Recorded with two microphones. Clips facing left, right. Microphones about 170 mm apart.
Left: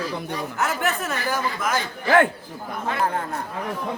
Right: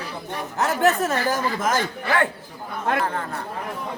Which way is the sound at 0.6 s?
35° right (ahead or behind).